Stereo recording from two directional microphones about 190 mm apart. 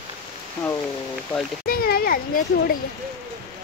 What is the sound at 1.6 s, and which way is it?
Speech, 50° left (ahead or behind).